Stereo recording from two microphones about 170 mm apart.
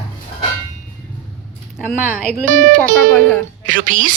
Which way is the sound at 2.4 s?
50° right (ahead or behind).